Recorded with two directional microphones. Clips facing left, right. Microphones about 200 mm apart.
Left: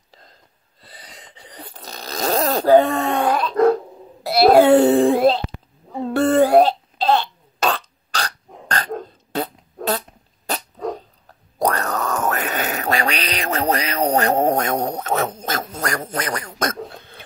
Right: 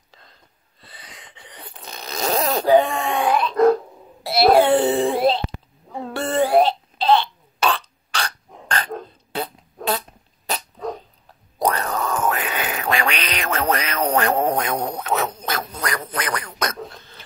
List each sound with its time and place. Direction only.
0.1 s gasp: 40° left (ahead or behind)
0.8 s snoring: 35° left (ahead or behind)
4.2 s wail: 45° left (ahead or behind)
6.1 s burping: 45° left (ahead or behind)
11.2 s a sound: 45° left (ahead or behind)
15.7 s quack: 45° left (ahead or behind)